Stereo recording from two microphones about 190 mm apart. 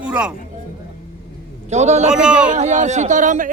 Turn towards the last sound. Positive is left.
turn(degrees=-40)  # may be behind; listen again after turning